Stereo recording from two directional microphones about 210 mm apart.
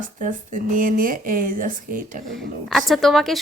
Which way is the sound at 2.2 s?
Centre (ahead or behind).